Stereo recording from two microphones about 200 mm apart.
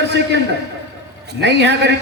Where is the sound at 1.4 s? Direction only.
60° right (ahead or behind).